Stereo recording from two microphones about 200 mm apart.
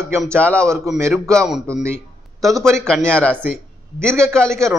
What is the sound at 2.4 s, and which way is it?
Speech, 15° right (ahead or behind).